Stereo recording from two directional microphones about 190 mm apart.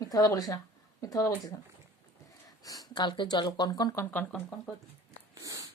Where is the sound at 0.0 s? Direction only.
20° left (ahead or behind).